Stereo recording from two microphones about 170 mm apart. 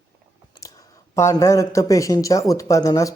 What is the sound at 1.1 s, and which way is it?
A man's voice, 15° left (ahead or behind).